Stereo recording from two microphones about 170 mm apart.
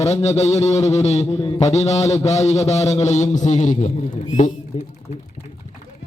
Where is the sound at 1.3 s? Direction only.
35° left (ahead or behind).